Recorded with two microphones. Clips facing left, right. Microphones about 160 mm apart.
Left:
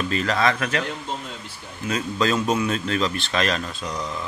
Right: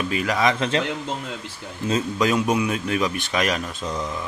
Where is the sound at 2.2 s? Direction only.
15° right (ahead or behind).